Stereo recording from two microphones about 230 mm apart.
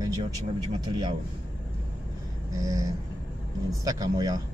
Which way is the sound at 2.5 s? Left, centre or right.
Centre.